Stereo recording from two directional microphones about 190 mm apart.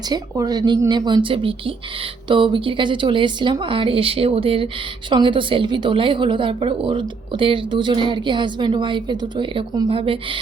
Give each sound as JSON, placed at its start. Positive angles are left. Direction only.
{"t": 0.1, "sound": "speech", "side_deg": -20}